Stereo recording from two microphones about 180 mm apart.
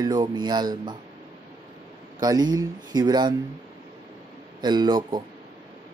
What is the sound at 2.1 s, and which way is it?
Speech, 20° right (ahead or behind).